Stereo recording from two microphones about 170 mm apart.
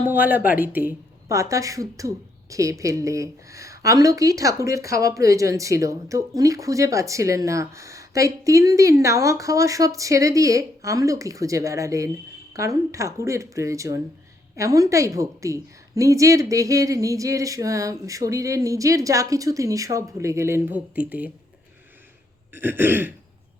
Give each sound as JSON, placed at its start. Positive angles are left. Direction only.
{"t": 0.0, "sound": "a woman's voice", "side_deg": -10}
{"t": 22.5, "sound": "speech", "side_deg": -10}